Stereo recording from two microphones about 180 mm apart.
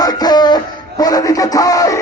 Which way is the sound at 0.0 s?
20° left (ahead or behind).